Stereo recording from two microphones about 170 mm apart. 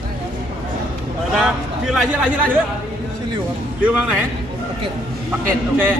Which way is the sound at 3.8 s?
5° right (ahead or behind).